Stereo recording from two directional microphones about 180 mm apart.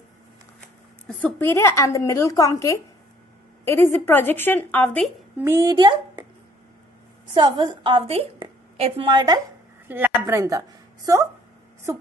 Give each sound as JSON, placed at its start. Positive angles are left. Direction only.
{"t": 1.0, "sound": "a woman's voice", "side_deg": 10}
{"t": 5.4, "sound": "speech", "side_deg": -15}
{"t": 7.3, "sound": "a woman's voice", "side_deg": -25}
{"t": 9.8, "sound": "a woman's voice", "side_deg": -10}